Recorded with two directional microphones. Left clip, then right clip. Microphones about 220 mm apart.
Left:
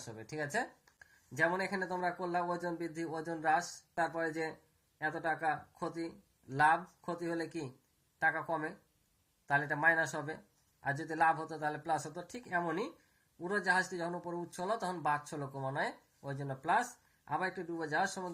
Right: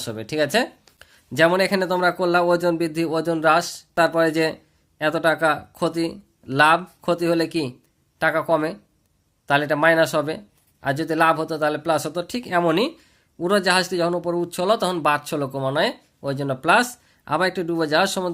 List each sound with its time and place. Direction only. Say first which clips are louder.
0.1 s speech: right 17 dB; 50° right (ahead or behind)
6.5 s speech: right 13 dB; 50° right (ahead or behind)